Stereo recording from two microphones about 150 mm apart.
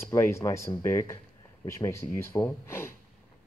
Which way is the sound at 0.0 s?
15° left (ahead or behind).